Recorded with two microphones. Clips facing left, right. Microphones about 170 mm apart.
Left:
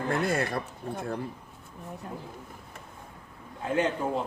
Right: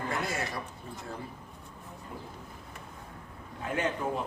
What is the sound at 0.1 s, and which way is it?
Speech, 55° left (ahead or behind).